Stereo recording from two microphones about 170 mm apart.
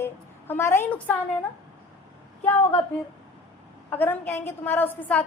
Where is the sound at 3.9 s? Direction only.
10° left (ahead or behind).